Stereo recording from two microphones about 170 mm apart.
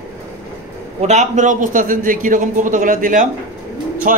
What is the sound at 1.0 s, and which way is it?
A man's voice, 45° right (ahead or behind).